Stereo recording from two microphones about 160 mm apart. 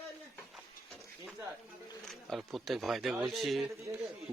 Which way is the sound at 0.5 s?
Centre (ahead or behind).